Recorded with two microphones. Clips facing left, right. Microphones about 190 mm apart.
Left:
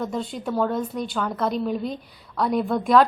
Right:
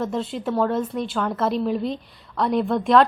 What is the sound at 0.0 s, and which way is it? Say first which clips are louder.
A woman's voice: right 2 dB; centre (ahead or behind).